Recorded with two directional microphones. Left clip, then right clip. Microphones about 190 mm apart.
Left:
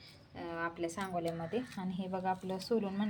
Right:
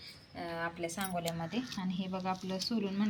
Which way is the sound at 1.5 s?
40° left (ahead or behind).